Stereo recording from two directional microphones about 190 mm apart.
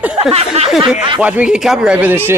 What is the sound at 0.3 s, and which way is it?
Speech, 35° right (ahead or behind).